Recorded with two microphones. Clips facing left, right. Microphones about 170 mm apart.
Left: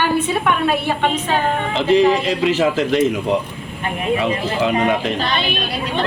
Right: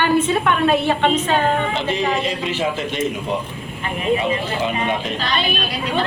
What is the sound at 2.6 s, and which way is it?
Speech, 85° left.